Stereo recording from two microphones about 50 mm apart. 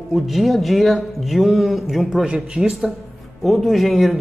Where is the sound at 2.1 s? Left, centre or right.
Centre.